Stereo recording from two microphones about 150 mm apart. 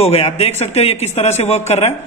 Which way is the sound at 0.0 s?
45° left (ahead or behind).